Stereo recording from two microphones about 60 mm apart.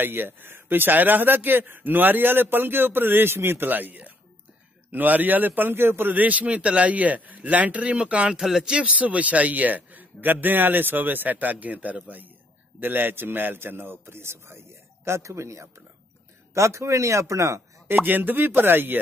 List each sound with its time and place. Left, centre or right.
0.0 s a man's voice: right; by 8.4 s centre
8.4 s speech: centre
8.7 s a man's voice: right
17.8 s speech: right